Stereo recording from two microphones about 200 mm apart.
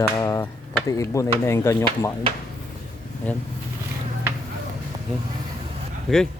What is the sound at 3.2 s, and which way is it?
Speech, 5° left (ahead or behind).